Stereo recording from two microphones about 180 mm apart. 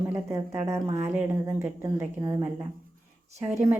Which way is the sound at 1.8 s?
20° right (ahead or behind).